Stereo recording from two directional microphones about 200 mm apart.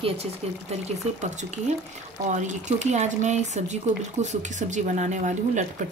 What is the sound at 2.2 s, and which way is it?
Speech, 35° right (ahead or behind).